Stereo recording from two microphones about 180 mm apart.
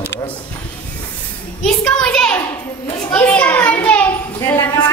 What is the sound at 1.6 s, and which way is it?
A woman's voice, 5° left (ahead or behind).